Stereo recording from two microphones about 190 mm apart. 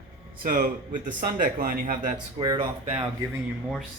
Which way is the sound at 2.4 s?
30° right (ahead or behind).